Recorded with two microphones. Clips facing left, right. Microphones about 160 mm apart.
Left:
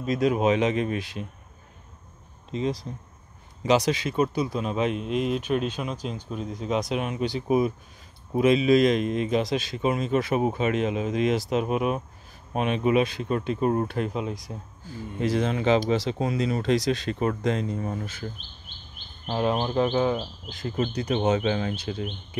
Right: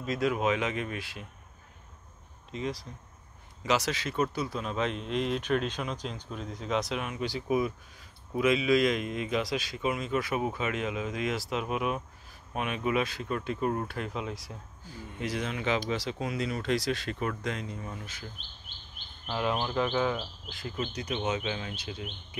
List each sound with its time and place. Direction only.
0.0 s a man's voice: 20° left (ahead or behind)
2.5 s a man's voice: 25° left (ahead or behind)
19.2 s a man's voice: 35° left (ahead or behind)
20.6 s speech: 40° left (ahead or behind)